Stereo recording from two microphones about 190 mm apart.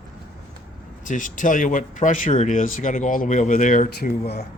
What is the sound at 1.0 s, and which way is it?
Speech, 45° left (ahead or behind).